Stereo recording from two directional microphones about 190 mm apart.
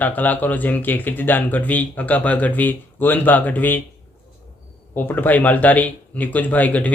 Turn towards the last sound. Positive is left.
turn(degrees=10)  # may be behind; listen again after turning